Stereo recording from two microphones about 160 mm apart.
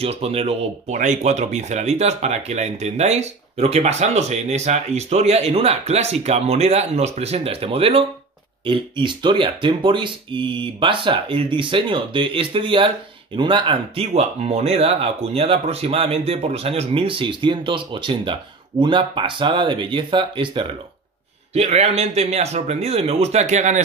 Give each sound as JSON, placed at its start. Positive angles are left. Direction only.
{"t": 0.0, "sound": "speech", "side_deg": -40}
{"t": 21.5, "sound": "speech", "side_deg": -40}